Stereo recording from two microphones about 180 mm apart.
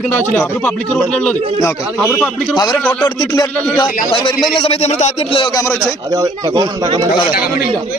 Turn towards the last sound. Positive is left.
turn(degrees=-20)  # may be behind; listen again after turning